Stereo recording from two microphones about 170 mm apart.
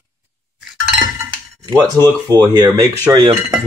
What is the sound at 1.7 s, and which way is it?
Speech, 25° right (ahead or behind).